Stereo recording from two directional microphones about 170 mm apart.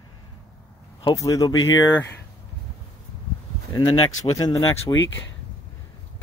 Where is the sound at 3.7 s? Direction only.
25° left (ahead or behind).